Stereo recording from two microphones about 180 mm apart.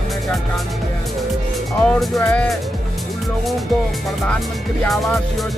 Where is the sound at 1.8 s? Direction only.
5° left (ahead or behind).